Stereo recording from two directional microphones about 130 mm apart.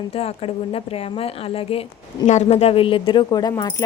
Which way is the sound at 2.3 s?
60° left (ahead or behind).